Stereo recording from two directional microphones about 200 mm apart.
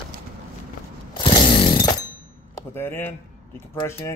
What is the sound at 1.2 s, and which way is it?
Chainsaw, 25° left (ahead or behind).